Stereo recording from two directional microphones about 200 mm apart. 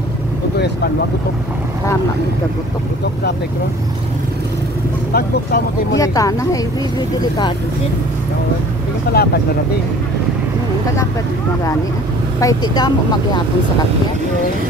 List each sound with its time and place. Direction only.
5.1 s speech: 55° left (ahead or behind)
5.9 s speech: 15° left (ahead or behind)
9.1 s speech: 50° left (ahead or behind)
12.4 s speech: 20° left (ahead or behind)